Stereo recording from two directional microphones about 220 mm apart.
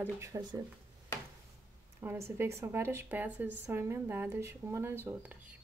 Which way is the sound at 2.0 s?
10° right (ahead or behind).